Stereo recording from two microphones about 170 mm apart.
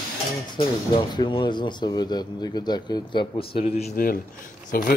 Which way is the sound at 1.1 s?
25° left (ahead or behind).